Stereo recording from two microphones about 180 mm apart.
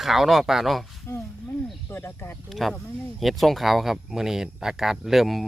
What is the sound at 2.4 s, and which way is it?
Speech, centre (ahead or behind).